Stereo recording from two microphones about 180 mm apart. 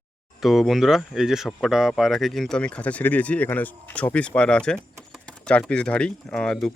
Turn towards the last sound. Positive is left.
turn(degrees=5)  # may be behind; listen again after turning